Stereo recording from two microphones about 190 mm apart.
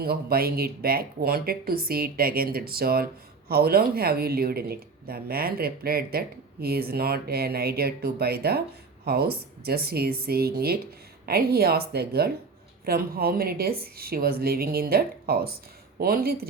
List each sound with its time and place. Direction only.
0.0 s speech: 55° right (ahead or behind)